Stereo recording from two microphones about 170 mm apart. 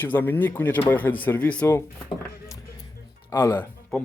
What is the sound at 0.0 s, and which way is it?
Speech, 10° left (ahead or behind).